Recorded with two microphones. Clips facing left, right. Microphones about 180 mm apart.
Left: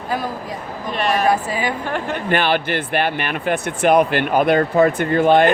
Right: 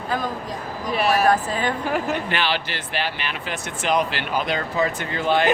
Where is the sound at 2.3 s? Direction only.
50° left (ahead or behind).